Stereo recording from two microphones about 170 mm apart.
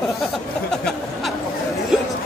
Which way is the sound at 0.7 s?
5° left (ahead or behind).